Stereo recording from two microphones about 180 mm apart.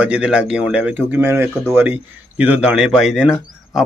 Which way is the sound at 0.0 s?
5° right (ahead or behind).